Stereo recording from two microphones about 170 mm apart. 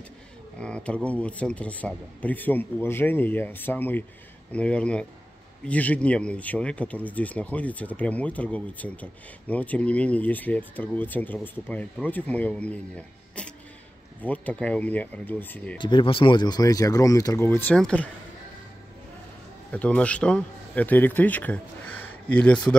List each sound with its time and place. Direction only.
0.6 s speech: 5° left (ahead or behind)
15.8 s speech: 30° left (ahead or behind); by 18.1 s 5° left (ahead or behind)
19.7 s speech: 10° left (ahead or behind)